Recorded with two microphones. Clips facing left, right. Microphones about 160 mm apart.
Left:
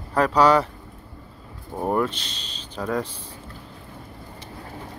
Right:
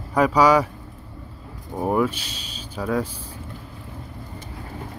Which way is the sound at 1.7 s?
5° right (ahead or behind).